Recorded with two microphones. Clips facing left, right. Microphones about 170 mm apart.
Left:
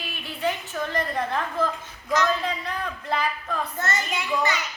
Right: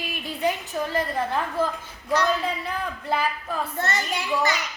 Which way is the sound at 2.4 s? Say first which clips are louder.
Right 1 dB; 5° right (ahead or behind).